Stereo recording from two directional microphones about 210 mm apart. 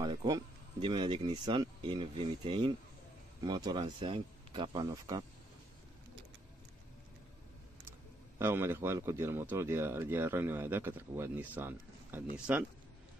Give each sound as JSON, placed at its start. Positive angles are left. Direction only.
{"t": 0.0, "sound": "speech", "side_deg": -20}
{"t": 8.4, "sound": "speech", "side_deg": -10}